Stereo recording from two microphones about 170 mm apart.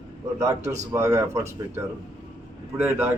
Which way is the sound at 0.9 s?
20° right (ahead or behind).